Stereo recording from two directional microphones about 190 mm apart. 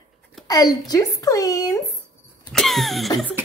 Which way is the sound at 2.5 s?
Centre (ahead or behind).